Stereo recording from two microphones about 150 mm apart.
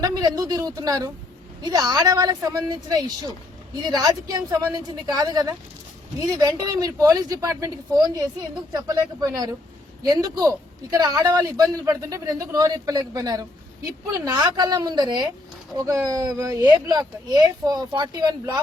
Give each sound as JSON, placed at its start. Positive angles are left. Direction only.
{"t": 0.0, "sound": "speech", "side_deg": -25}